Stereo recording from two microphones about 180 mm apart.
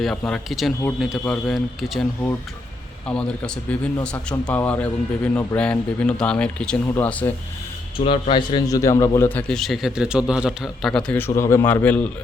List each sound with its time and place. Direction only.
0.0 s a man's voice: 5° left (ahead or behind)
3.1 s a man's voice: 5° left (ahead or behind)
7.9 s a man's voice: 30° left (ahead or behind); by 12.1 s 10° left (ahead or behind)